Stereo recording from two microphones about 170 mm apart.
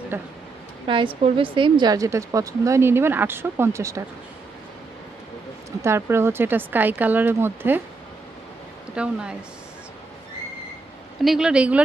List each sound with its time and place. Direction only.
0.8 s a woman's voice: 30° right (ahead or behind)
5.7 s speech: 15° right (ahead or behind)
8.9 s speech: 5° right (ahead or behind)
11.2 s speech: 5° right (ahead or behind)